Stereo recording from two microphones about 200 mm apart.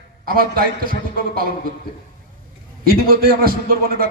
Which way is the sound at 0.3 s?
50° right (ahead or behind).